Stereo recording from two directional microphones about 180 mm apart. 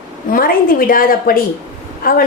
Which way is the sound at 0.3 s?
55° left (ahead or behind).